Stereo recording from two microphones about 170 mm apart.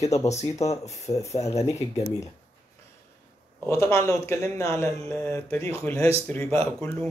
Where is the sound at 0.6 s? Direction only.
40° left (ahead or behind).